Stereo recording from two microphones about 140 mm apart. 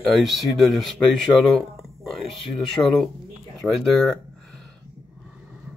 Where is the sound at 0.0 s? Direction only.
Centre (ahead or behind).